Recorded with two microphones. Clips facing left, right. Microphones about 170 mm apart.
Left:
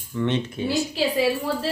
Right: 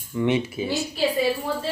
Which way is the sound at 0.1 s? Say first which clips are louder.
Right 2 dB; 10° right (ahead or behind).